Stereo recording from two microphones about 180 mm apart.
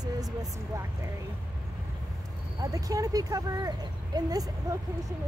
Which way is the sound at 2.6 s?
20° right (ahead or behind).